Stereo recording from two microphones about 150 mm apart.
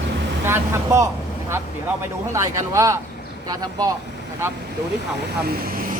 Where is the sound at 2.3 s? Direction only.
20° right (ahead or behind).